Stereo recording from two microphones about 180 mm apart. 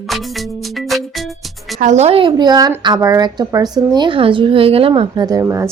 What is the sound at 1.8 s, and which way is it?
A woman's voice, 40° right (ahead or behind).